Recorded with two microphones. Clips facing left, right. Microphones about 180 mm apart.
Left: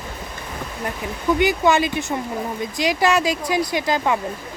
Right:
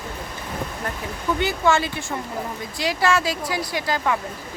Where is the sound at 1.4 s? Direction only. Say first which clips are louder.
Left 3 dB; 15° left (ahead or behind).